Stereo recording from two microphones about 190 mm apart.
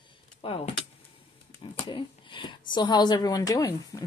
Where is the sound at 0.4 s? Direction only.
30° left (ahead or behind).